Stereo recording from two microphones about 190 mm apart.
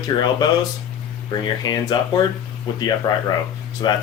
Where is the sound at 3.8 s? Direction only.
20° left (ahead or behind).